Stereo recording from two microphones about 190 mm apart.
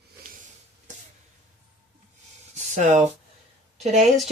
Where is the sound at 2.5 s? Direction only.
40° right (ahead or behind).